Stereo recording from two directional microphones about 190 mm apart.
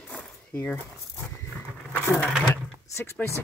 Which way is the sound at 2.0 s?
10° left (ahead or behind).